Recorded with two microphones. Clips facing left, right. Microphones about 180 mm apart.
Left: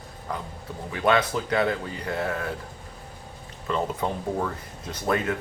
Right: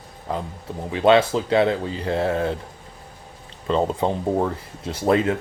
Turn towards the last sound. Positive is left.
turn(degrees=-25)  # may be behind; listen again after turning